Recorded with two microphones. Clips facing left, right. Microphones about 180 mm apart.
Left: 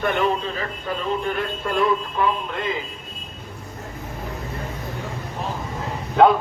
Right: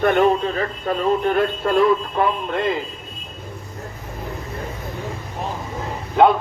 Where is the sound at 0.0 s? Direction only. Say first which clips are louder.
Right 6 dB; 45° right (ahead or behind).